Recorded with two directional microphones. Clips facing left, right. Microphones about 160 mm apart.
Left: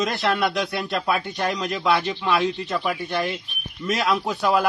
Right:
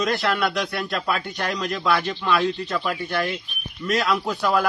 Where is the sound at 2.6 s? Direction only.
10° left (ahead or behind).